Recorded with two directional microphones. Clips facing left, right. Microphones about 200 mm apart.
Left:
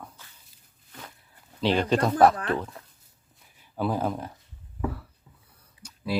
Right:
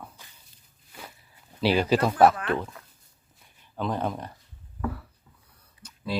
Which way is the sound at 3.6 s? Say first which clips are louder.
Left 2 dB; 10° left (ahead or behind).